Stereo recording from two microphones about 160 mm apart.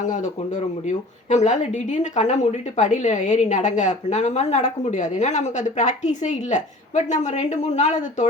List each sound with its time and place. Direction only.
0.9 s speech: 45° left (ahead or behind)